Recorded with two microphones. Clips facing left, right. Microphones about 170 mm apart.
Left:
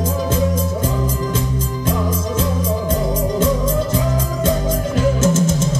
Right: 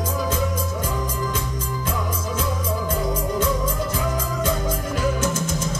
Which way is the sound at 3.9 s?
25° left (ahead or behind).